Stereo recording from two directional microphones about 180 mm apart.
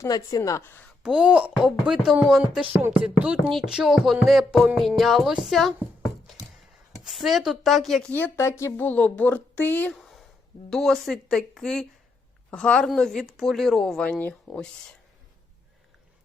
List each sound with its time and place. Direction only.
0.0 s a woman's voice: 20° left (ahead or behind)
1.0 s speech: 5° right (ahead or behind)
2.6 s music: 15° right (ahead or behind)
3.0 s speech: 5° right (ahead or behind)
7.0 s a woman's voice: centre (ahead or behind)